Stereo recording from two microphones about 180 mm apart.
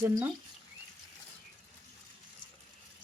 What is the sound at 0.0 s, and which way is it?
Speech, 10° right (ahead or behind).